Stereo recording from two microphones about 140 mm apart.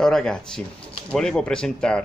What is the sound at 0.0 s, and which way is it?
Speech, 5° left (ahead or behind).